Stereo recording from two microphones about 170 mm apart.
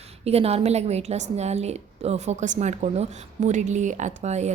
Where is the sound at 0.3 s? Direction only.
35° right (ahead or behind).